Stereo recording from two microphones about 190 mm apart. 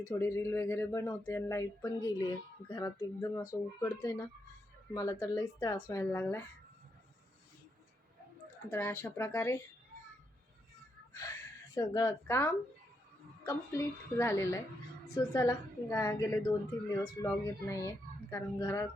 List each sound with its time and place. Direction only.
0.0 s a woman's voice: 15° left (ahead or behind)
8.7 s a woman's voice: 15° left (ahead or behind)
11.1 s a woman's voice: 15° left (ahead or behind)